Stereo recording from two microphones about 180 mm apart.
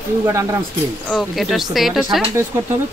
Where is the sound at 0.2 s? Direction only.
15° right (ahead or behind).